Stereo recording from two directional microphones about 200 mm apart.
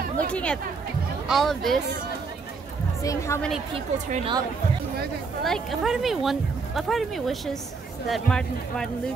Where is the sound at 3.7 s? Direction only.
25° right (ahead or behind).